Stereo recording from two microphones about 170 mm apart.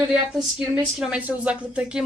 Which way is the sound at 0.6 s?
5° right (ahead or behind).